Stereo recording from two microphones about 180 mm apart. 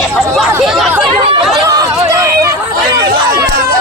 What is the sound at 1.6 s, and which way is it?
Chatter, 20° right (ahead or behind).